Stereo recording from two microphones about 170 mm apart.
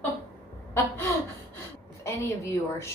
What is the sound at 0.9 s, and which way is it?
Chuckle, 15° left (ahead or behind).